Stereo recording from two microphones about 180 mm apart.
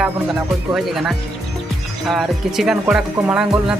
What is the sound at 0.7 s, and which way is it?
Speech, centre (ahead or behind).